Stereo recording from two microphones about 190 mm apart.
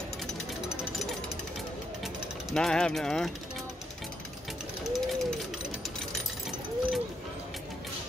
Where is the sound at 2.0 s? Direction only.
Centre (ahead or behind).